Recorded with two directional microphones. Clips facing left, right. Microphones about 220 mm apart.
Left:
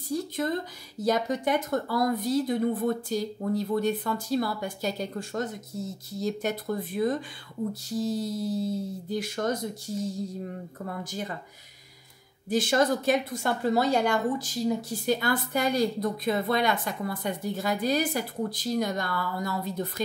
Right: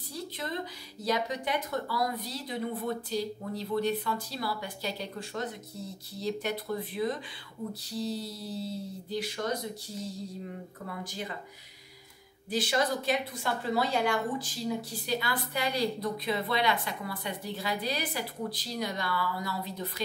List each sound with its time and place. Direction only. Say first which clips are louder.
0.1 s a sound: left 9 dB; 45° left (ahead or behind)
1.0 s a woman's voice: left 5 dB; 45° left (ahead or behind)
12.4 s a woman's voice: left 5 dB; 50° left (ahead or behind)